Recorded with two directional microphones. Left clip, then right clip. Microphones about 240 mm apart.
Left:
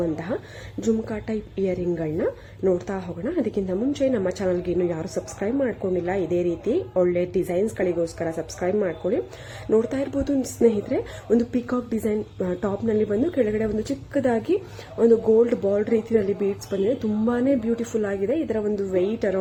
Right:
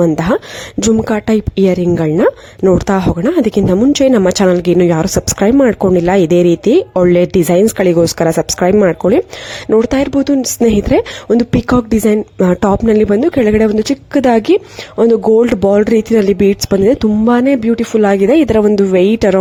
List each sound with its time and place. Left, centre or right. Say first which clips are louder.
0.0 s a woman's voice: right 14 dB; right